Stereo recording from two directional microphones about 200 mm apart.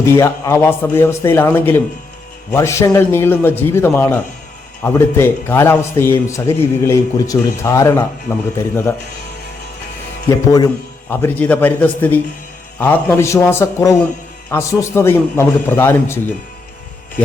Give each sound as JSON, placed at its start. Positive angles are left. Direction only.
{"t": 0.0, "sound": "a man's voice", "side_deg": 10}
{"t": 10.2, "sound": "a man's voice", "side_deg": 20}